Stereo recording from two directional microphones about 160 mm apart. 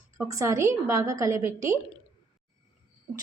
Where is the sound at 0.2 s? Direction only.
20° right (ahead or behind).